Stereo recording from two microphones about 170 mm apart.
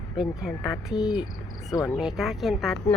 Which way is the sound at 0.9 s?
25° left (ahead or behind).